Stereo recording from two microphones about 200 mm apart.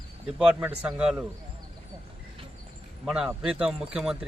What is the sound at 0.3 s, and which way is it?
Speech, 5° right (ahead or behind).